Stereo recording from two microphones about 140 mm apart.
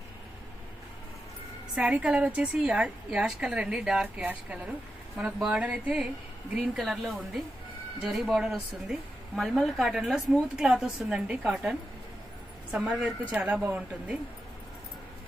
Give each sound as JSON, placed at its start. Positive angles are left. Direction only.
{"t": 1.8, "sound": "a woman's voice", "side_deg": -5}
{"t": 12.7, "sound": "a woman's voice", "side_deg": -10}